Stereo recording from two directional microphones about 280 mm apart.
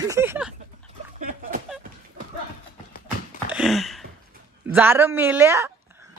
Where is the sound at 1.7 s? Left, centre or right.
Centre.